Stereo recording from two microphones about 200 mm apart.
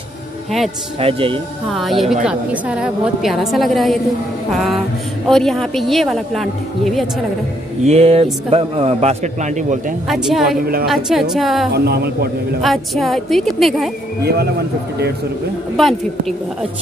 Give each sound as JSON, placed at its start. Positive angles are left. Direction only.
{"t": 0.9, "sound": "speech", "side_deg": -25}
{"t": 1.7, "sound": "a woman's voice", "side_deg": 0}
{"t": 5.3, "sound": "a woman's voice", "side_deg": 0}
{"t": 7.8, "sound": "a man's voice", "side_deg": -30}
{"t": 10.0, "sound": "a woman's voice", "side_deg": 0}
{"t": 11.7, "sound": "a man's voice", "side_deg": -55}
{"t": 12.6, "sound": "a woman's voice", "side_deg": 0}
{"t": 14.2, "sound": "a man's voice", "side_deg": -55}
{"t": 15.7, "sound": "a woman's voice", "side_deg": 0}